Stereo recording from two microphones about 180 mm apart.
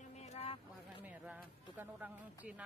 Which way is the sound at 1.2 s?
5° right (ahead or behind).